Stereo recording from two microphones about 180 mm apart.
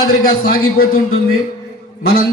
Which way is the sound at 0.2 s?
60° left (ahead or behind).